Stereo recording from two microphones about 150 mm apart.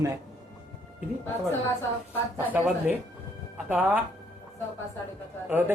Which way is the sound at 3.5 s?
10° right (ahead or behind).